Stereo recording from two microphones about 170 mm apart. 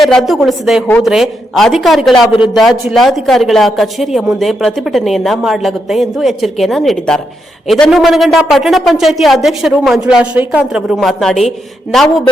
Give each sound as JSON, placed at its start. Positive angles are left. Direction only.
{"t": 0.0, "sound": "speech", "side_deg": 0}
{"t": 2.3, "sound": "a man's voice", "side_deg": 25}
{"t": 2.6, "sound": "speech", "side_deg": 0}